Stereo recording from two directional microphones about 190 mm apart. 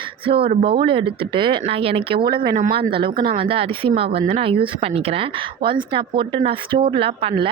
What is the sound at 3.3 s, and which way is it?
Speech, 30° right (ahead or behind).